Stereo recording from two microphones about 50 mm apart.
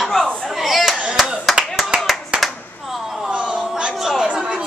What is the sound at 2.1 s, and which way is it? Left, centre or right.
Clapping, centre.